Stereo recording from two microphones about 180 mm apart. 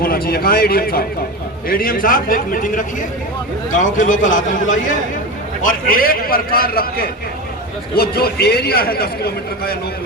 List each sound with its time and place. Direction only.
0.0 s a man's voice: 55° left (ahead or behind)